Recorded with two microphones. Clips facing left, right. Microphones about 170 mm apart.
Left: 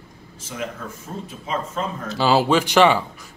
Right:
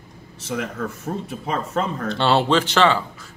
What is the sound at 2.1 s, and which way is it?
Speech, 5° left (ahead or behind).